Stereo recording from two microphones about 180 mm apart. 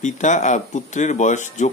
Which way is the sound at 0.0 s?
40° left (ahead or behind).